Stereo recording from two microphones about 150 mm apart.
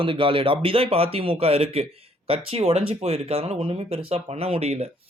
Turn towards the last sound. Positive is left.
turn(degrees=-45)  # may be behind; listen again after turning